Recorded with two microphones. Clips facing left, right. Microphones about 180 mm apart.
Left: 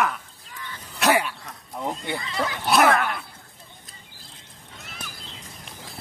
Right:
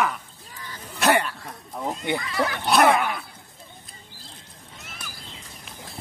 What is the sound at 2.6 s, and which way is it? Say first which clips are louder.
Dog: even; centre (ahead or behind).